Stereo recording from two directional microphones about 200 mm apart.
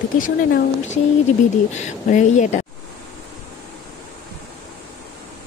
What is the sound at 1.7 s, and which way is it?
Speech, 35° left (ahead or behind).